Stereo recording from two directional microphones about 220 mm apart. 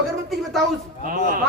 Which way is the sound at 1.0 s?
40° right (ahead or behind).